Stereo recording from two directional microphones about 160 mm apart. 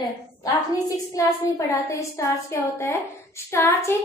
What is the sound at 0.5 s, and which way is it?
A woman's voice, 20° left (ahead or behind).